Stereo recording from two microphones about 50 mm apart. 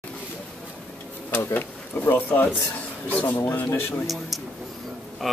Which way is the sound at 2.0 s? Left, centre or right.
Left.